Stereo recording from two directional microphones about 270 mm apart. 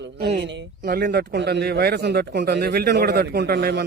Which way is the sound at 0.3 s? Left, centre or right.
Right.